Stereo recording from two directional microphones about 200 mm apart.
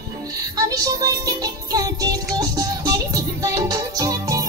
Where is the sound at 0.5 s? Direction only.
15° right (ahead or behind).